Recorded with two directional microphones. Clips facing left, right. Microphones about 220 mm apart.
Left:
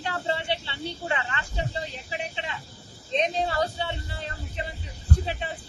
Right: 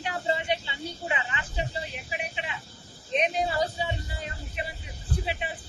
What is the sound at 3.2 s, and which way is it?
Speech, 10° right (ahead or behind).